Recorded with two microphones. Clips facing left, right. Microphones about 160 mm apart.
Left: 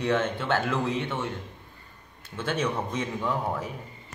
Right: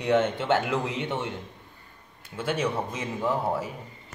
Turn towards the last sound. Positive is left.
turn(degrees=-5)  # may be behind; listen again after turning